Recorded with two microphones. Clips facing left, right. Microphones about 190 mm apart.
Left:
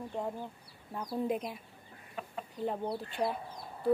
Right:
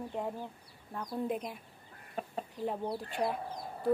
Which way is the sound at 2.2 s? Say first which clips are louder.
Right 3 dB; 40° right (ahead or behind).